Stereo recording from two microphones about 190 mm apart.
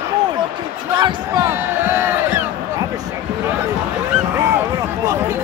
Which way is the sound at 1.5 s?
10° right (ahead or behind).